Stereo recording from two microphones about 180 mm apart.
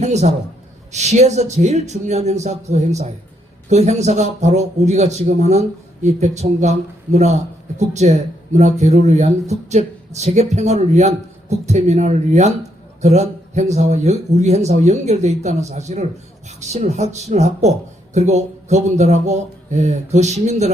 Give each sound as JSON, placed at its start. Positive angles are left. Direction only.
{"t": 0.0, "sound": "speech", "side_deg": -40}